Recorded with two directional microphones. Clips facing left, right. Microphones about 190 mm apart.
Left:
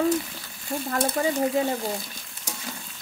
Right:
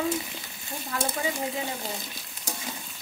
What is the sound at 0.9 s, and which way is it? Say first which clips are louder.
Speech: left 5 dB; 45° left (ahead or behind).